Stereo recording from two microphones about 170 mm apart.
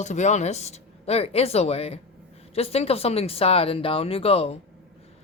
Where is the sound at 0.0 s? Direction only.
45° left (ahead or behind).